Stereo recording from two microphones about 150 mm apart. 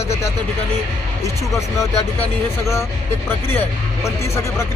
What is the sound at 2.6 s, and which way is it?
Speech, 20° left (ahead or behind).